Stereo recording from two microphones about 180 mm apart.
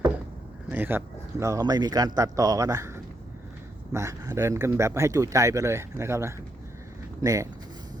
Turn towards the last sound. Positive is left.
turn(degrees=-20)  # may be behind; listen again after turning